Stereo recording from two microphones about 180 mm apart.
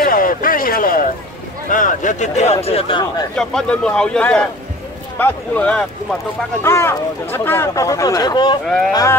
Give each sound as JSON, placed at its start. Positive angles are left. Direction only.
{"t": 0.0, "sound": "a sound", "side_deg": 50}
{"t": 1.7, "sound": "speech", "side_deg": 45}
{"t": 3.3, "sound": "speech", "side_deg": 5}
{"t": 8.6, "sound": "speech", "side_deg": 0}